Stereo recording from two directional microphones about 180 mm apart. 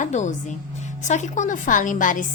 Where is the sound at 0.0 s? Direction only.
45° left (ahead or behind).